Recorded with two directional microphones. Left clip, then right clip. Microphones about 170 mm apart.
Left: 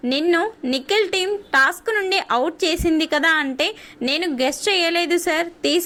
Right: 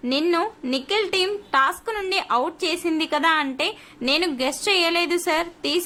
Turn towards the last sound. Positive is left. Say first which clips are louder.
# left 3 dB
turn(degrees=20)  # may be behind; listen again after turning